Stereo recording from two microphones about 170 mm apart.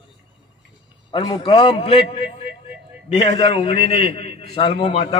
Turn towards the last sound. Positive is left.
turn(degrees=30)  # may be behind; listen again after turning